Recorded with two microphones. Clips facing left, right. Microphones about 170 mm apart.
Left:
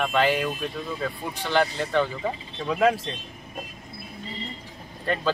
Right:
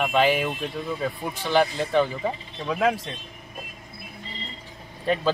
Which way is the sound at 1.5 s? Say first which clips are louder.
Right 2 dB; 15° right (ahead or behind).